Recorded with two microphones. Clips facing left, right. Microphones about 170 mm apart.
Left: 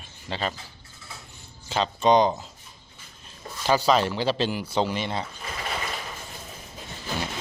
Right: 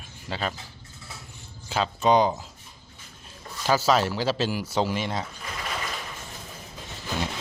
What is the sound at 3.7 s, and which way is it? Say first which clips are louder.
Speech: left 1 dB; 5° right (ahead or behind).